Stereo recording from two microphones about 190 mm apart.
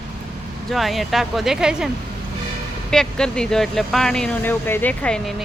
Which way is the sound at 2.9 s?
5° left (ahead or behind).